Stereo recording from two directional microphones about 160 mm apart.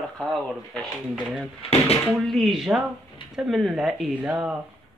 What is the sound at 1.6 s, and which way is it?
Speech, 40° left (ahead or behind).